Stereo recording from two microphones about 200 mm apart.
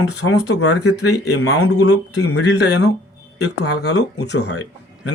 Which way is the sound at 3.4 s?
75° left (ahead or behind).